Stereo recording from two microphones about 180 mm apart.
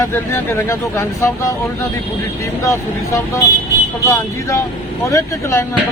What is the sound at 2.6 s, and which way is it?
Speech, 15° left (ahead or behind).